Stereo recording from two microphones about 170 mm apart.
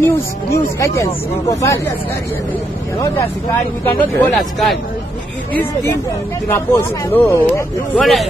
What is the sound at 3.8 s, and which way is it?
Speech, 5° left (ahead or behind).